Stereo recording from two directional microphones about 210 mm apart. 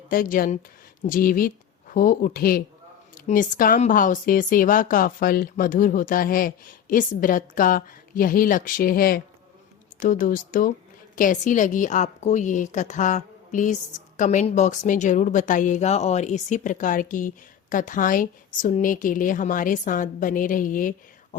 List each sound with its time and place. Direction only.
0.1 s a woman's voice: 40° left (ahead or behind)